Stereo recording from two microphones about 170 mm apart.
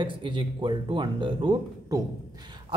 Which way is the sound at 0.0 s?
30° right (ahead or behind).